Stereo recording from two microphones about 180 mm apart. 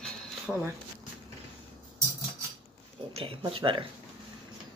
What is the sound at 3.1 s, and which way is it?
Speech, 30° right (ahead or behind).